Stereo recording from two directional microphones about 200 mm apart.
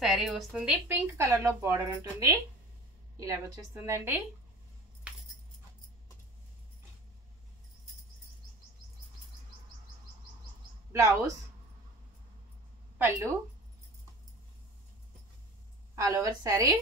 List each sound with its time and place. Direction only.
0.0 s a woman's voice: centre (ahead or behind)
10.9 s a woman's voice: 15° right (ahead or behind)
12.9 s a woman's voice: 10° right (ahead or behind)
16.0 s a woman's voice: 15° right (ahead or behind)